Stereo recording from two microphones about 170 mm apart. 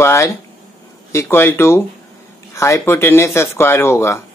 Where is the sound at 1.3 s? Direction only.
15° left (ahead or behind).